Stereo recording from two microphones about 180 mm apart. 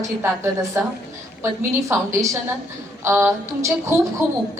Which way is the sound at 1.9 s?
15° right (ahead or behind).